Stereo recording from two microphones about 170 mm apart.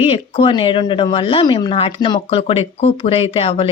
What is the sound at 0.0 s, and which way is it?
Speech, 30° left (ahead or behind).